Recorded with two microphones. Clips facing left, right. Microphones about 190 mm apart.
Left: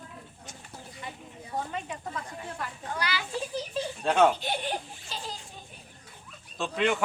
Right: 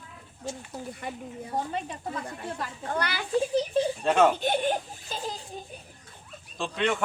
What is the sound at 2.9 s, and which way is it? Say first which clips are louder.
Speech: right 3 dB; 55° right (ahead or behind).